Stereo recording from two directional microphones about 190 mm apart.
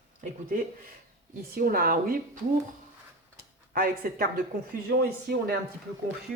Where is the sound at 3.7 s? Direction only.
50° right (ahead or behind).